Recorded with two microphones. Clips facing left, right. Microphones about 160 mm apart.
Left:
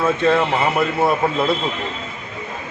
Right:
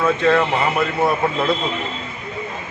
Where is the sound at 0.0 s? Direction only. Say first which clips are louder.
Even; 10° left (ahead or behind).